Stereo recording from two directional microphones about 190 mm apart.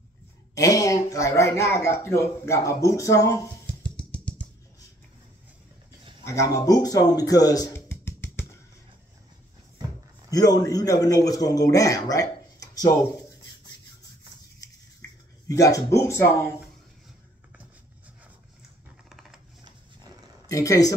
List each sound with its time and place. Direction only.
0.6 s speech: 20° left (ahead or behind)
3.6 s music: 5° left (ahead or behind)
6.2 s speech: 15° left (ahead or behind)
10.3 s a man's voice: 20° left (ahead or behind)
15.4 s speech: 20° left (ahead or behind)
19.0 s typing: centre (ahead or behind)
20.4 s speech: 15° left (ahead or behind)